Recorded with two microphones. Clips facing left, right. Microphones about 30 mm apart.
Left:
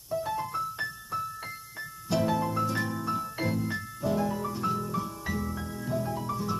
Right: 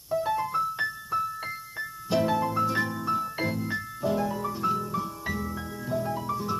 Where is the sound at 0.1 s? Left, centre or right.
Centre.